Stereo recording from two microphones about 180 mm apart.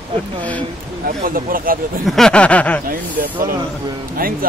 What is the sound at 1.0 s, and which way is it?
Speech, 50° right (ahead or behind).